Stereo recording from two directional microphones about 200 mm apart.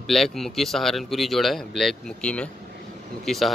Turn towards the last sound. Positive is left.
turn(degrees=0)  # may be behind; listen again after turning